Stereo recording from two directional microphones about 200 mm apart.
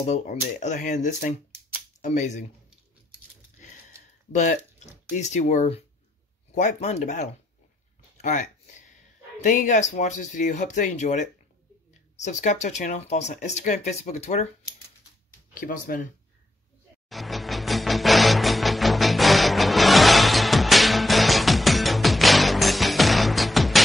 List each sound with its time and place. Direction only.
0.0 s speech: 35° left (ahead or behind)
4.3 s speech: 40° left (ahead or behind)
8.2 s a sound: 40° left (ahead or behind)
9.4 s speech: 40° left (ahead or behind)
15.5 s speech: 45° left (ahead or behind)
17.1 s music: centre (ahead or behind)